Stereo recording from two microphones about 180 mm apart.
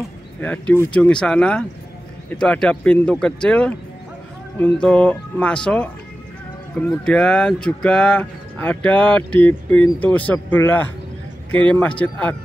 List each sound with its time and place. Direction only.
0.4 s speech: 10° left (ahead or behind)